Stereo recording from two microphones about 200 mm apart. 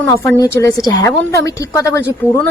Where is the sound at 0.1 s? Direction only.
15° left (ahead or behind).